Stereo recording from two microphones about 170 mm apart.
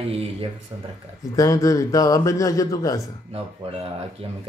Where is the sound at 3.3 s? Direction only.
35° right (ahead or behind).